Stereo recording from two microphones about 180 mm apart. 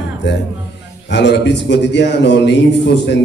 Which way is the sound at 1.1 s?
75° left (ahead or behind).